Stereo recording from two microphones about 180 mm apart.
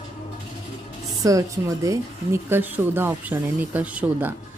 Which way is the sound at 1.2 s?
20° right (ahead or behind).